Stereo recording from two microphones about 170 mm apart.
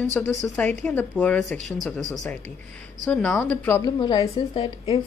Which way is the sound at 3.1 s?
5° left (ahead or behind).